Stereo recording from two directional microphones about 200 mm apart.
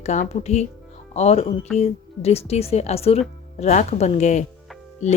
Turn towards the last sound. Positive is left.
turn(degrees=35)  # may be behind; listen again after turning